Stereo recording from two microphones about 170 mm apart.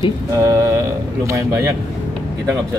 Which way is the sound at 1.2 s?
20° right (ahead or behind).